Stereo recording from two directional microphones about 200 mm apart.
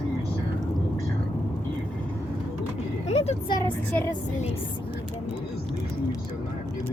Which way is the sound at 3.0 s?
30° left (ahead or behind).